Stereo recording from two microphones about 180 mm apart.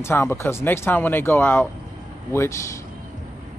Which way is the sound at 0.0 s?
15° left (ahead or behind).